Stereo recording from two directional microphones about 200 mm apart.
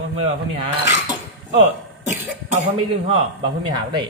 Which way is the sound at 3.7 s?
20° right (ahead or behind).